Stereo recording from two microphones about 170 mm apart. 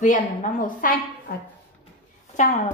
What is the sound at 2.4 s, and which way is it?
Speech, 45° left (ahead or behind).